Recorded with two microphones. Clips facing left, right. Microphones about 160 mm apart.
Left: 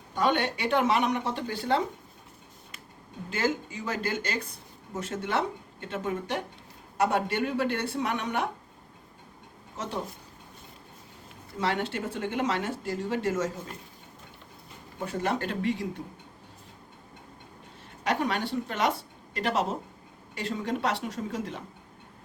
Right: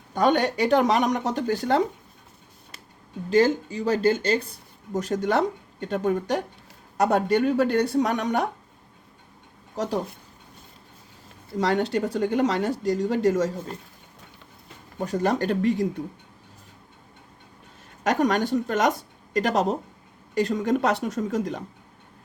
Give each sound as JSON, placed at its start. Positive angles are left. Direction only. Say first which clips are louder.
{"t": 0.1, "sound": "speech", "louder": "right 5 dB", "side_deg": -45}
{"t": 3.2, "sound": "speech", "louder": "right 9 dB", "side_deg": -35}
{"t": 9.7, "sound": "speech", "louder": "right 8 dB", "side_deg": -40}
{"t": 11.5, "sound": "speech", "louder": "right 6 dB", "side_deg": -40}
{"t": 14.9, "sound": "speech", "louder": "right 6 dB", "side_deg": -40}
{"t": 18.0, "sound": "a woman's voice", "louder": "right 6 dB", "side_deg": -45}